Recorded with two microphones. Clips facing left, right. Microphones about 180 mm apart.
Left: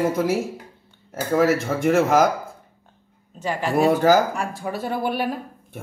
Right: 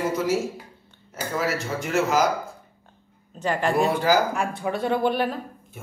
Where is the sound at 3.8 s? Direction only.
45° left (ahead or behind).